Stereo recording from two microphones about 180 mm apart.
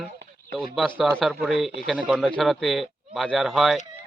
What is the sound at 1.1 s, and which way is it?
A man's voice, centre (ahead or behind).